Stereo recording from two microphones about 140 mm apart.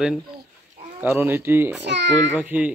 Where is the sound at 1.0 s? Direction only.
15° right (ahead or behind).